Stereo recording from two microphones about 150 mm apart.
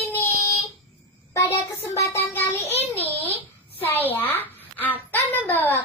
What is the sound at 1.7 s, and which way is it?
Child singing, 15° left (ahead or behind).